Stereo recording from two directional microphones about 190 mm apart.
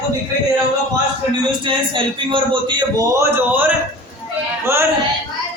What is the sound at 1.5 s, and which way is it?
A man's voice, 25° right (ahead or behind).